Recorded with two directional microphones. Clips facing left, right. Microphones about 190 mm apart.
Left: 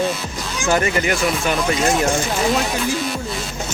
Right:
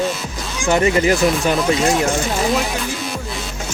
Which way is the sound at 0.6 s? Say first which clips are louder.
Right 4 dB; 25° right (ahead or behind).